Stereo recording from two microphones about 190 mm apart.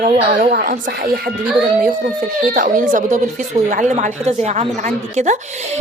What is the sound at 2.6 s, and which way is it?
A woman's voice, 45° right (ahead or behind).